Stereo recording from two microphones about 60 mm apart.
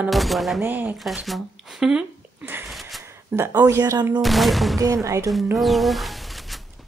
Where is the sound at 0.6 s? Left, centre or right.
Right.